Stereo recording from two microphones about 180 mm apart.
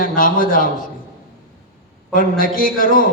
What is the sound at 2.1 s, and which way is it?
Speech, 50° left (ahead or behind).